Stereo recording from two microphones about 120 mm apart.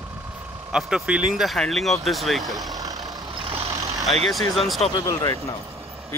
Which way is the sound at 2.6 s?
30° right (ahead or behind).